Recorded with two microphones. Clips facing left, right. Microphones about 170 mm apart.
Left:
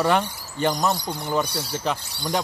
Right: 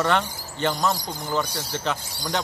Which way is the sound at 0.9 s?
65° left (ahead or behind).